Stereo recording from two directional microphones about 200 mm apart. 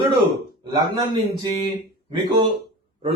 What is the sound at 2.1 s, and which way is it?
Speech, 20° right (ahead or behind).